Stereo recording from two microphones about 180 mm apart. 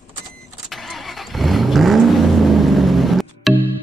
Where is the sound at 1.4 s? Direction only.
Centre (ahead or behind).